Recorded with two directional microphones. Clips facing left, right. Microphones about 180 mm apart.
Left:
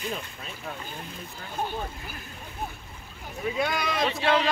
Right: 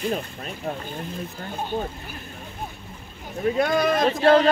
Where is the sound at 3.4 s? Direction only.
50° right (ahead or behind).